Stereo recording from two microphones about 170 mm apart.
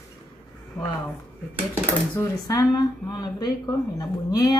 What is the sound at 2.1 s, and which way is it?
A woman's voice, 20° left (ahead or behind).